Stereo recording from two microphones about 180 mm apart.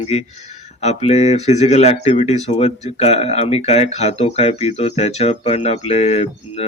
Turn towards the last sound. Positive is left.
turn(degrees=35)  # may be behind; listen again after turning